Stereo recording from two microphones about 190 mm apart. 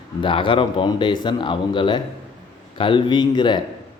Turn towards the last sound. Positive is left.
turn(degrees=25)  # may be behind; listen again after turning